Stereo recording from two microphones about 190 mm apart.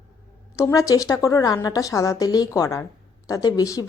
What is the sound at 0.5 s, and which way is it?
Speech, 15° left (ahead or behind).